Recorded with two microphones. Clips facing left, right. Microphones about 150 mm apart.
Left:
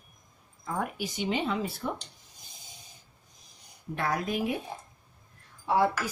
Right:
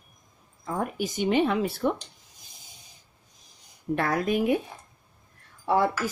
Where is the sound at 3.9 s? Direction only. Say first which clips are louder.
Right 5 dB; 60° right (ahead or behind).